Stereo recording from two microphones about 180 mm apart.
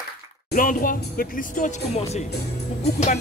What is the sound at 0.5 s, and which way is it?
Speech, 50° left (ahead or behind).